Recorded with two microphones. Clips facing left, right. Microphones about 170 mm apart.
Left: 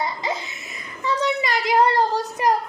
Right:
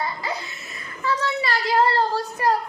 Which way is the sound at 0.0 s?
20° left (ahead or behind).